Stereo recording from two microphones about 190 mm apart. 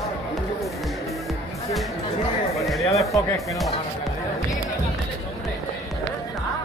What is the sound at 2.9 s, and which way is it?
Speech, 15° left (ahead or behind).